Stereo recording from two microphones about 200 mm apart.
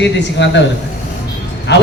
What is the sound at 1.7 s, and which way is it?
Speech, 60° left (ahead or behind).